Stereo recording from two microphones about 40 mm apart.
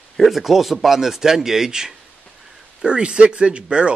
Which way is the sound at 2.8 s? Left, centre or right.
Right.